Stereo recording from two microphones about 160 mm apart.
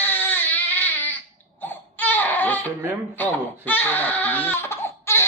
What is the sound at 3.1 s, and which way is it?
Crying, 10° left (ahead or behind).